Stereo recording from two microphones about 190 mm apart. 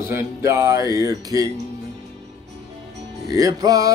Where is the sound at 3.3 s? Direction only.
20° right (ahead or behind).